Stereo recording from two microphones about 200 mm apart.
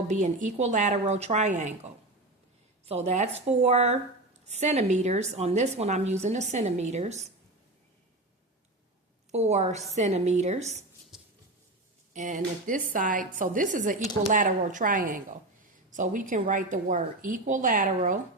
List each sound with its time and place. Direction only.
0.1 s a woman's voice: 35° right (ahead or behind)
9.3 s a woman's voice: 35° right (ahead or behind)
11.1 s mouse: centre (ahead or behind)
12.1 s a woman's voice: 40° right (ahead or behind)